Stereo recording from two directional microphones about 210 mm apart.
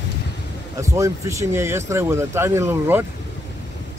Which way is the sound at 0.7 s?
15° right (ahead or behind).